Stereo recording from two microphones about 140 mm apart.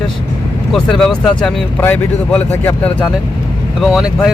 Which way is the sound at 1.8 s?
15° left (ahead or behind).